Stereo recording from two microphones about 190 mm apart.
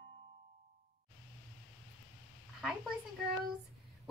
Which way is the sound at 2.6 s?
5° right (ahead or behind).